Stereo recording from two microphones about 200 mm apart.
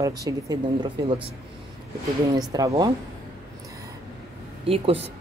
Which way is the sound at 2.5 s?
20° right (ahead or behind).